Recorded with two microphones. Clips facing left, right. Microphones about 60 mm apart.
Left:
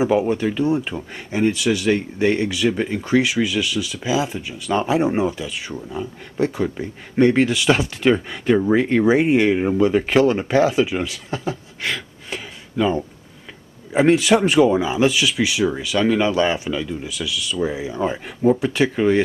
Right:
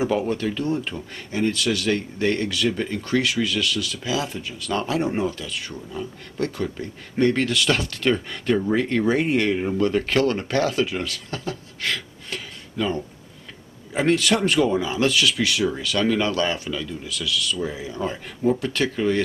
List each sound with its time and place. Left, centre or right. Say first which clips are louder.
0.0 s speech: left 5 dB; centre